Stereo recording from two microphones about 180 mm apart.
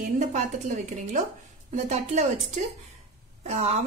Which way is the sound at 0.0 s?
45° right (ahead or behind).